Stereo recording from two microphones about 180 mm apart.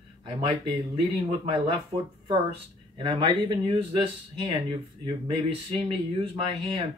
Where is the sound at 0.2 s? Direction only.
30° right (ahead or behind).